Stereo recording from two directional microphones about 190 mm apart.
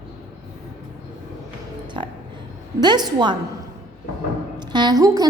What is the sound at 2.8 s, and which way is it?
Speech, 20° right (ahead or behind).